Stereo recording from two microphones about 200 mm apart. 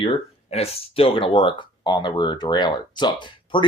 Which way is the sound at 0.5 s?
30° left (ahead or behind).